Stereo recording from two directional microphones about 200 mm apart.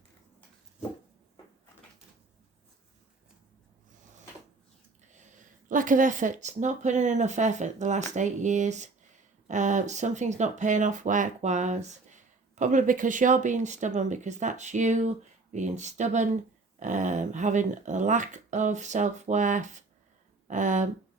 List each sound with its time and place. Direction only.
5.1 s speech: 35° right (ahead or behind)